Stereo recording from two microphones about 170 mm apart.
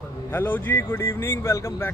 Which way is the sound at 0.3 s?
10° left (ahead or behind).